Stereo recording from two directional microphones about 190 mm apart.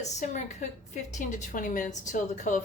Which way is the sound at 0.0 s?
35° left (ahead or behind).